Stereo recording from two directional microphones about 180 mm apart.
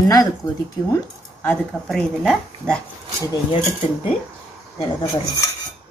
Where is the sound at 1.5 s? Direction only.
5° left (ahead or behind).